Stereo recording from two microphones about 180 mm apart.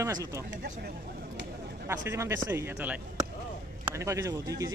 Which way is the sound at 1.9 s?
15° right (ahead or behind).